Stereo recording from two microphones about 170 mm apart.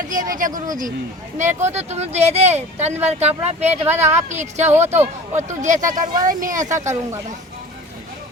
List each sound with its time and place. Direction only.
0.1 s speech: 50° right (ahead or behind)
4.9 s speech: 15° right (ahead or behind)
5.4 s speech: 45° right (ahead or behind)